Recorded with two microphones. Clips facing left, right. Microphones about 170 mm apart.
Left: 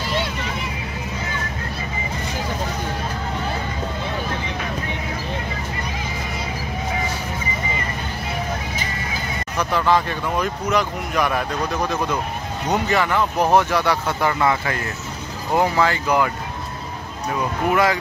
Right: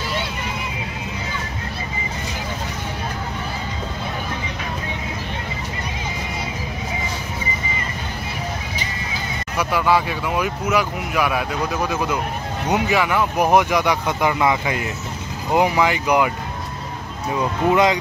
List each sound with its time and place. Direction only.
9.6 s speech: 10° right (ahead or behind)
17.6 s speech: 20° right (ahead or behind)